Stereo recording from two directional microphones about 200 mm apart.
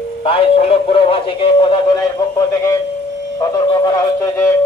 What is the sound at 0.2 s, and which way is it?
A man's voice, 25° left (ahead or behind).